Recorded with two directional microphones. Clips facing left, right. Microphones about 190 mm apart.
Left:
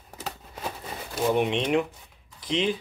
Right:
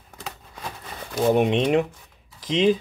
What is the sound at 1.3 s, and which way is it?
Speech, 40° right (ahead or behind).